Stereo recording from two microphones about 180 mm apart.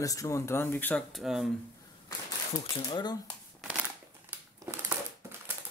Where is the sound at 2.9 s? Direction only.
25° left (ahead or behind).